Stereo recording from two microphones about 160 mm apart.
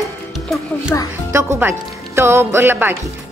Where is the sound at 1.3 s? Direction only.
15° right (ahead or behind).